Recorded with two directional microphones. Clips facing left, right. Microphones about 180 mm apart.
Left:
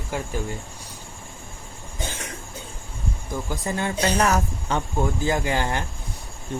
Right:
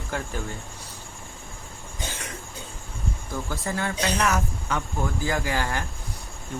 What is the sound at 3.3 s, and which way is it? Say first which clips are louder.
Speech: left 2 dB; 15° left (ahead or behind).